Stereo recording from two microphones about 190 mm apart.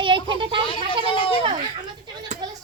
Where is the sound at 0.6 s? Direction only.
30° left (ahead or behind).